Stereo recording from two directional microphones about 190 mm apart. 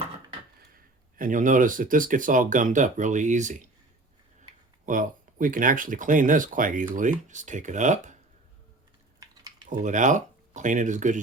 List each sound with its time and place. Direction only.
1.1 s speech: 45° right (ahead or behind)
4.9 s speech: 45° right (ahead or behind)
9.6 s speech: 40° right (ahead or behind)